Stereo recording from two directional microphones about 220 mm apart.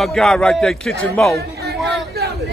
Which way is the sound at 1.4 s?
45° right (ahead or behind).